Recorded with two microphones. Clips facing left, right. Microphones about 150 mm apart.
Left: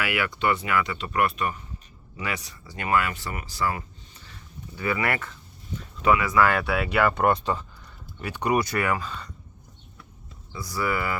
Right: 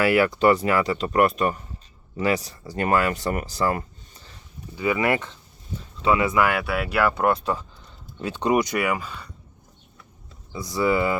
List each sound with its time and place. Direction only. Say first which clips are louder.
0.0 s speech: right 8 dB; 40° right (ahead or behind)
4.8 s speech: right 5 dB; 15° right (ahead or behind)
8.2 s speech: right 3 dB; 20° right (ahead or behind)
10.5 s speech: right 6 dB; 20° right (ahead or behind)